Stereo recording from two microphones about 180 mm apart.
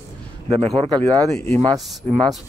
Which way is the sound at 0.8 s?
25° right (ahead or behind).